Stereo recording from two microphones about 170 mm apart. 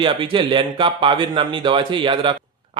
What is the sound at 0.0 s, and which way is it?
A man's voice, 30° right (ahead or behind).